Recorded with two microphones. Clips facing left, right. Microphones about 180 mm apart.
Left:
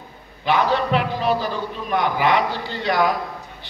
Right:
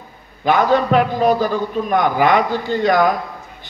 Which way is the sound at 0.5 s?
45° right (ahead or behind).